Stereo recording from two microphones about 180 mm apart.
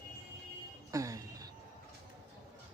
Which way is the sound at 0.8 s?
20° right (ahead or behind).